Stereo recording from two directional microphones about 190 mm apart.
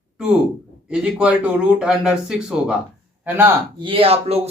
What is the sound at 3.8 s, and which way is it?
Speech, 30° right (ahead or behind).